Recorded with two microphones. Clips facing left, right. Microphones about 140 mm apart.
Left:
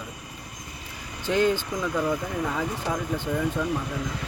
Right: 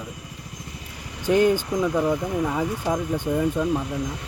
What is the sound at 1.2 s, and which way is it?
Speech, 15° right (ahead or behind).